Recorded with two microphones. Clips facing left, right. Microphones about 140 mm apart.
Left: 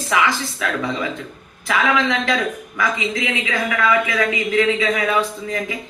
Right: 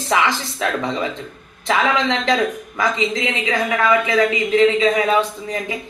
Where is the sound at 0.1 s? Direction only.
30° right (ahead or behind).